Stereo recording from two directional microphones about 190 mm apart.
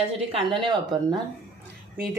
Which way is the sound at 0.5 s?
25° right (ahead or behind).